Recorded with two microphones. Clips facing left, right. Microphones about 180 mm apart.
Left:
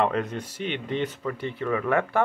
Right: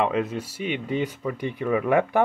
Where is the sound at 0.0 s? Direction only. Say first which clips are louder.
Right 1 dB; 5° right (ahead or behind).